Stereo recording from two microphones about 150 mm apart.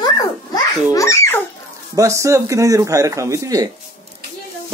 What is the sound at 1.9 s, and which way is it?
Speech, 20° right (ahead or behind).